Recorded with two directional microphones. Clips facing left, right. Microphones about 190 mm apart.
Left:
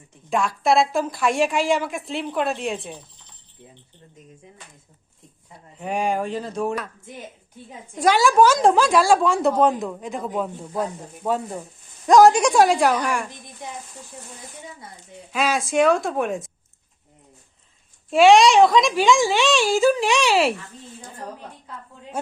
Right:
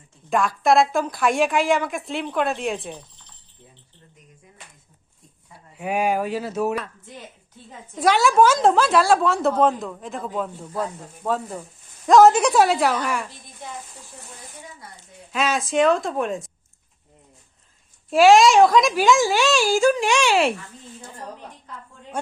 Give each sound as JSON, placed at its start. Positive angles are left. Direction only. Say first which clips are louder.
{"t": 0.3, "sound": "a woman's voice", "louder": "right 1 dB", "side_deg": 0}
{"t": 5.8, "sound": "speech", "louder": "right 1 dB", "side_deg": -5}
{"t": 7.9, "sound": "a woman's voice", "louder": "left 1 dB", "side_deg": 5}
{"t": 9.2, "sound": "a woman's voice", "louder": "left 1 dB", "side_deg": 0}
{"t": 10.2, "sound": "a woman's voice", "louder": "left 1 dB", "side_deg": 15}
{"t": 11.2, "sound": "a woman's voice", "louder": "left 1 dB", "side_deg": 0}
{"t": 13.6, "sound": "a woman's voice", "louder": "left 1 dB", "side_deg": 15}
{"t": 15.3, "sound": "a woman's voice", "louder": "left 1 dB", "side_deg": 0}
{"t": 18.1, "sound": "a woman's voice", "louder": "even", "side_deg": 0}
{"t": 22.1, "sound": "a woman's voice", "louder": "even", "side_deg": 5}